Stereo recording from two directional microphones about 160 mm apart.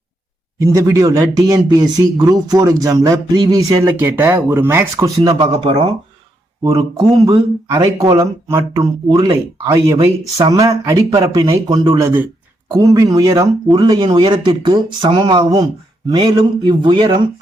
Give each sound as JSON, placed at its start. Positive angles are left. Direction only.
{"t": 0.6, "sound": "speech", "side_deg": -20}
{"t": 5.5, "sound": "speech", "side_deg": -35}
{"t": 6.6, "sound": "speech", "side_deg": -25}